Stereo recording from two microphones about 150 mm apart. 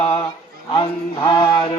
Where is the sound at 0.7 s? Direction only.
35° left (ahead or behind).